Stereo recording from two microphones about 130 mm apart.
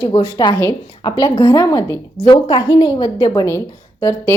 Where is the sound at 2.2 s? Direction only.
35° left (ahead or behind).